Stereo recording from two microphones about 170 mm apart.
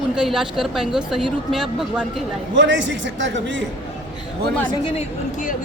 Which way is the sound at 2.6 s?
90° right.